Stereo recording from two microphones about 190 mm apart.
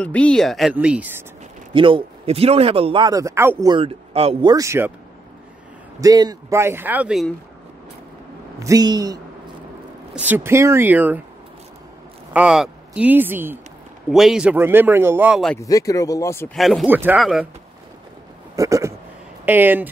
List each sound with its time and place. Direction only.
0.0 s speech: 5° left (ahead or behind)
1.7 s speech: 25° right (ahead or behind)
3.7 s speech: 30° right (ahead or behind); by 4.9 s 15° right (ahead or behind)
5.9 s speech: 20° right (ahead or behind); by 7.3 s centre (ahead or behind)
8.5 s speech: 20° right (ahead or behind)
10.1 s speech: 10° right (ahead or behind)
12.3 s speech: 5° right (ahead or behind)
15.5 s speech: 15° left (ahead or behind)
16.5 s speech: centre (ahead or behind)
18.6 s speech: 15° right (ahead or behind)